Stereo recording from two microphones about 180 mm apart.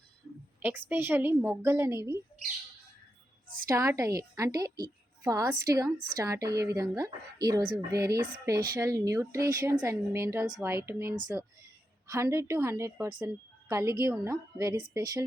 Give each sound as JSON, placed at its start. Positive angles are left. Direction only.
{"t": 0.6, "sound": "a woman's voice", "side_deg": -10}
{"t": 3.7, "sound": "a woman's voice", "side_deg": -15}